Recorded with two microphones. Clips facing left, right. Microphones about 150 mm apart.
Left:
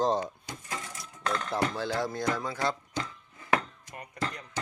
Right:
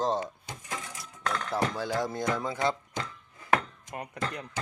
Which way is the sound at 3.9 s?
60° right (ahead or behind).